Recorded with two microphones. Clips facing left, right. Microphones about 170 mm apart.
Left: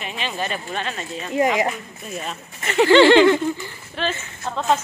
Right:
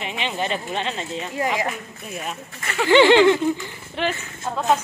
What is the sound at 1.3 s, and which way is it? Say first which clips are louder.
Speech: left 6 dB; 20° left (ahead or behind).